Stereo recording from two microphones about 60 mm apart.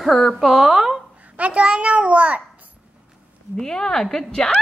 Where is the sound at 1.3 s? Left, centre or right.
Right.